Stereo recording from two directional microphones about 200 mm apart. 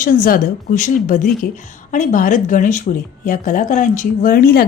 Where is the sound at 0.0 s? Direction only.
45° left (ahead or behind).